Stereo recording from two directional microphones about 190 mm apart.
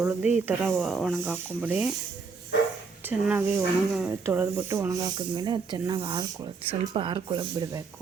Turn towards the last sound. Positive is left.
turn(degrees=-25)  # may be behind; listen again after turning